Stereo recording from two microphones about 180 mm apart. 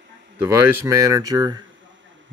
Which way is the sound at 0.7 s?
20° right (ahead or behind).